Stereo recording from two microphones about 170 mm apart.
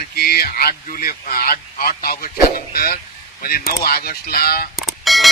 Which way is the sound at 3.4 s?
60° left (ahead or behind).